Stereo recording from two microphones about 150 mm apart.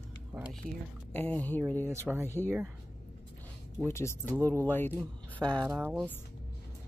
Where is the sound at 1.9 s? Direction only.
15° right (ahead or behind).